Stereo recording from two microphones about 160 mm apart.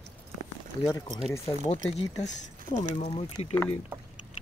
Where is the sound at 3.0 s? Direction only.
40° left (ahead or behind).